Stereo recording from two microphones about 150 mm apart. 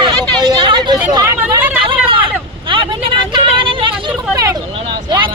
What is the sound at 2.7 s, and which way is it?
Vehicle, 35° right (ahead or behind).